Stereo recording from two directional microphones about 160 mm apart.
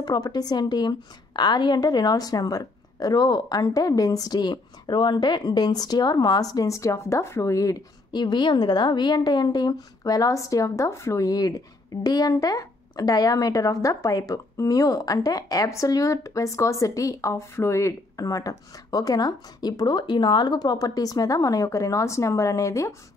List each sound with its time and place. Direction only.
0.0 s a woman's voice: 25° left (ahead or behind)